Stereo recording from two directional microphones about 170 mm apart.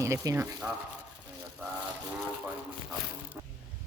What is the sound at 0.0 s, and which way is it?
Speech, 15° right (ahead or behind).